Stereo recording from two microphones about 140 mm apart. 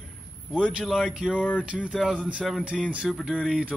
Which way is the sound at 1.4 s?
10° left (ahead or behind).